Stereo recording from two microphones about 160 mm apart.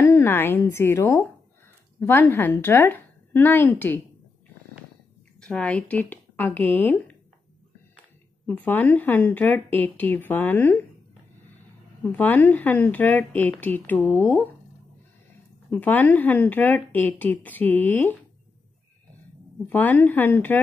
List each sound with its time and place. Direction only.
0.0 s a woman's voice: 15° left (ahead or behind)
5.4 s speech: 5° left (ahead or behind)
8.5 s speech: 10° left (ahead or behind)
12.1 s speech: 10° left (ahead or behind)
15.7 s speech: 10° left (ahead or behind)
19.7 s speech: 10° left (ahead or behind)